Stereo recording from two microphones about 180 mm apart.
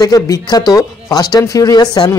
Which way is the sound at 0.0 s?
20° left (ahead or behind).